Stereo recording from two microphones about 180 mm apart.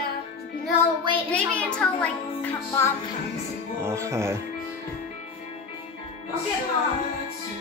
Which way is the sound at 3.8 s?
15° right (ahead or behind).